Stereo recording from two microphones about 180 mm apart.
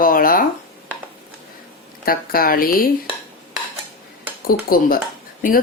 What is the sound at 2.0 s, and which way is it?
Speech, 55° left (ahead or behind).